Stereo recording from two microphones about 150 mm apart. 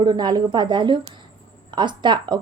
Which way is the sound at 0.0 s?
30° right (ahead or behind).